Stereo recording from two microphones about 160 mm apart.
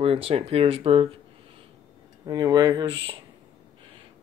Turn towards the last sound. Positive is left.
turn(degrees=-30)  # may be behind; listen again after turning